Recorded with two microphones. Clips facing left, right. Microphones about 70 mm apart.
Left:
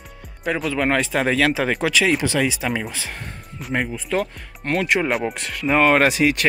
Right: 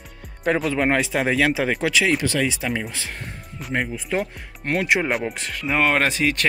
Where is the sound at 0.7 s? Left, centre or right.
Right.